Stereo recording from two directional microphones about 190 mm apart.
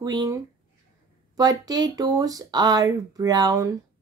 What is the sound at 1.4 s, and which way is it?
Speech, 20° right (ahead or behind).